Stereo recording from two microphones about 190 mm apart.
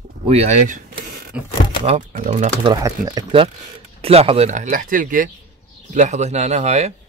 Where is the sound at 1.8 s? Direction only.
35° right (ahead or behind).